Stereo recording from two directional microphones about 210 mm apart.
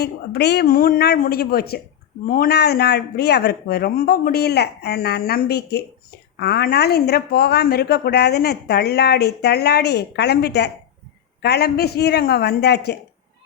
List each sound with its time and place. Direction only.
0.0 s speech: 50° left (ahead or behind)